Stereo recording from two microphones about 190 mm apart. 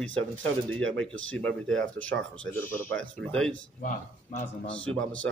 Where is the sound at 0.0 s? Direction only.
10° left (ahead or behind).